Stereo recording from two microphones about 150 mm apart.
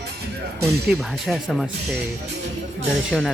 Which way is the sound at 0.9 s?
Centre (ahead or behind).